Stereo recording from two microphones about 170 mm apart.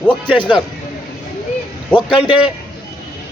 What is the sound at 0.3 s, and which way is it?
Speech, 30° left (ahead or behind).